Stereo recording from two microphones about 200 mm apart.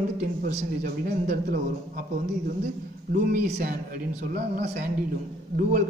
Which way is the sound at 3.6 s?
45° right (ahead or behind).